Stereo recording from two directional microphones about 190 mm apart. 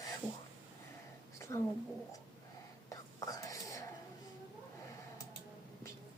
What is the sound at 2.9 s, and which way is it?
Whispering, 20° left (ahead or behind).